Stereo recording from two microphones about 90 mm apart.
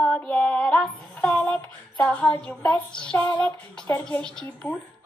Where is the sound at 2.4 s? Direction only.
10° left (ahead or behind).